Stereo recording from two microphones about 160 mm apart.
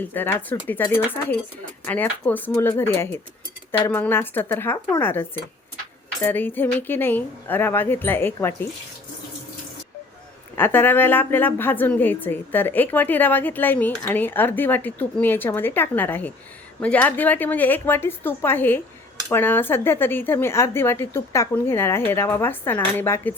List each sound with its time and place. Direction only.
0.0 s speech: 10° left (ahead or behind)
10.5 s speech: 15° left (ahead or behind)